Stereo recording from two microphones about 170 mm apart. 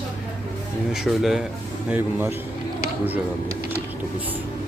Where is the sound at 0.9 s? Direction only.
Centre (ahead or behind).